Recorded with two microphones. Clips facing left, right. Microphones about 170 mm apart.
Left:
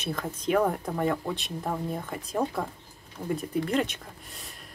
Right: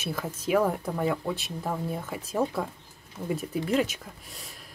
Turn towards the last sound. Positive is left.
turn(degrees=0)  # may be behind; listen again after turning